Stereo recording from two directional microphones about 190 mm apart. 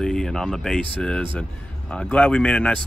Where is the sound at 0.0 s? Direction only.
Centre (ahead or behind).